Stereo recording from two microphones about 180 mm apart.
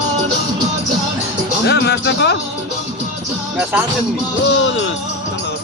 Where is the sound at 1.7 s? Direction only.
70° left (ahead or behind).